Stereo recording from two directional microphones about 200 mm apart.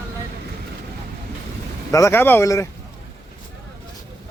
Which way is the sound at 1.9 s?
15° left (ahead or behind).